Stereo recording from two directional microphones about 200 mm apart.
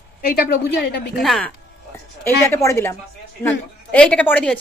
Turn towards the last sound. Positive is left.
turn(degrees=5)  # may be behind; listen again after turning